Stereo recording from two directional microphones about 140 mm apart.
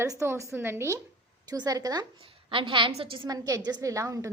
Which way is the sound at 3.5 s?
25° right (ahead or behind).